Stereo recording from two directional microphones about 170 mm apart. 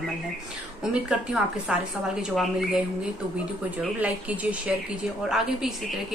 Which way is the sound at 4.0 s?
10° right (ahead or behind).